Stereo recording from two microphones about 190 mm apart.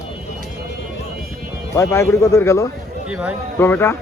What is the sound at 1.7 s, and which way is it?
Speech, 15° left (ahead or behind).